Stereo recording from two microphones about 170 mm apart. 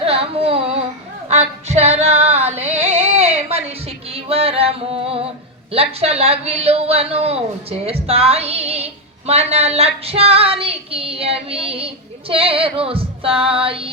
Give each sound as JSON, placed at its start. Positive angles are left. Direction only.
{"t": 0.0, "sound": "a sound", "side_deg": -35}
{"t": 1.3, "sound": "female singing", "side_deg": -40}
{"t": 3.0, "sound": "music", "side_deg": -35}
{"t": 5.7, "sound": "speech", "side_deg": -35}